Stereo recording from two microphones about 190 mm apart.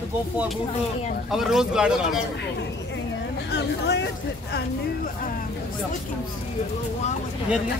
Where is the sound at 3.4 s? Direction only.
65° left (ahead or behind).